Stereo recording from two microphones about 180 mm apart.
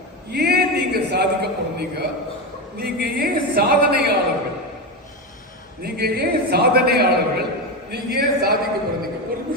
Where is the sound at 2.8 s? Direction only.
60° right (ahead or behind).